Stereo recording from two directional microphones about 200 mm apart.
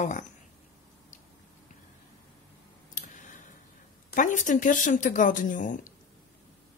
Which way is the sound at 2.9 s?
40° left (ahead or behind).